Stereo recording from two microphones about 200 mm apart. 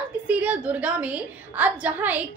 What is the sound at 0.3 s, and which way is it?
A woman's voice, 5° right (ahead or behind).